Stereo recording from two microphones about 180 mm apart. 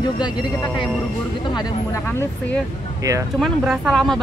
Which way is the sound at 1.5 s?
15° left (ahead or behind).